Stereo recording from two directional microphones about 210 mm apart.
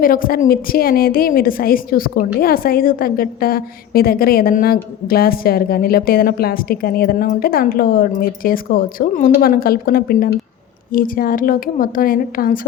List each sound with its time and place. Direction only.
0.0 s a woman's voice: 40° left (ahead or behind)